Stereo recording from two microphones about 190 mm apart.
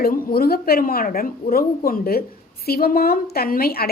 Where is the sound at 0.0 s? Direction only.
50° left (ahead or behind).